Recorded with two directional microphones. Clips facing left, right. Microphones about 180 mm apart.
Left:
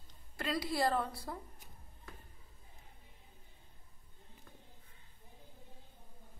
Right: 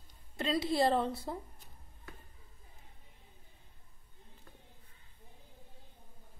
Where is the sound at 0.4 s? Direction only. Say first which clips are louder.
Right 4 dB; 25° right (ahead or behind).